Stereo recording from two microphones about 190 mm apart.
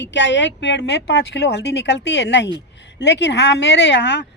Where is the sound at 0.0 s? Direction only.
70° left (ahead or behind).